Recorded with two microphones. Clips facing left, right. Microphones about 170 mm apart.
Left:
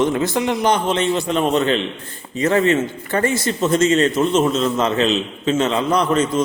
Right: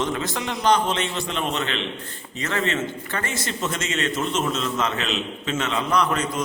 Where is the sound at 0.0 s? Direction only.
25° left (ahead or behind).